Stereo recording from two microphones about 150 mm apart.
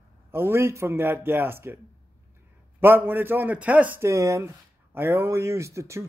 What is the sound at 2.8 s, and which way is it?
A man's voice, 15° right (ahead or behind).